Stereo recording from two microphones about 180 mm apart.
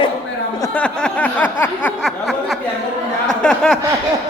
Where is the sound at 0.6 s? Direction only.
10° left (ahead or behind).